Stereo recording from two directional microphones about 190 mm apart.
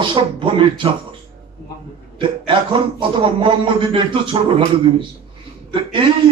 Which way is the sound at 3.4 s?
25° right (ahead or behind).